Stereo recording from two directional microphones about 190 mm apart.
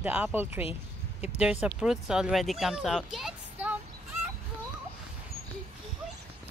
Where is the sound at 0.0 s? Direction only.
10° right (ahead or behind).